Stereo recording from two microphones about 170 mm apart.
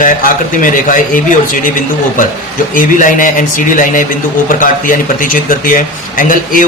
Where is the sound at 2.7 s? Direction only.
50° left (ahead or behind).